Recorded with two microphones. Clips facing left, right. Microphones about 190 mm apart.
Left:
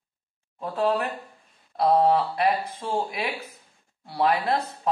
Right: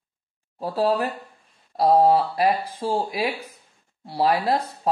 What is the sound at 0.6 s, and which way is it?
Speech, 35° right (ahead or behind).